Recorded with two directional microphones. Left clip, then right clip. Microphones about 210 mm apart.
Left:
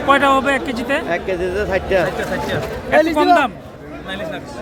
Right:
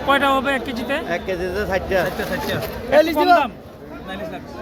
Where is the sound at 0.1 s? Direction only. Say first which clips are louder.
Left 4 dB; 5° left (ahead or behind).